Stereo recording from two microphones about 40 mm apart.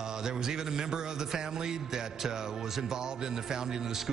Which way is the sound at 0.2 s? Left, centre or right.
Centre.